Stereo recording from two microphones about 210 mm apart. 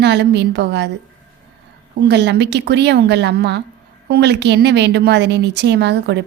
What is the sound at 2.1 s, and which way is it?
A woman's voice, 55° right (ahead or behind).